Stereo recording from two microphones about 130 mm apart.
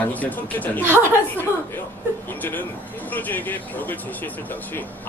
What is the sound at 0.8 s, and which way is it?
Speech, 15° right (ahead or behind).